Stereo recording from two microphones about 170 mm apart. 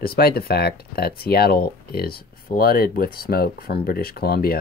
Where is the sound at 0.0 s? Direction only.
65° left (ahead or behind).